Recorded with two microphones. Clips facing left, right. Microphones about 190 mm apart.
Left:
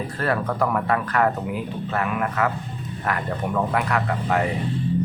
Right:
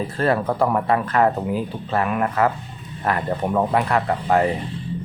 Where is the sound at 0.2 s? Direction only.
25° right (ahead or behind).